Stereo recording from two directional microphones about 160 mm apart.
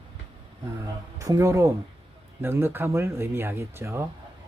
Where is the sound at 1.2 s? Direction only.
20° right (ahead or behind).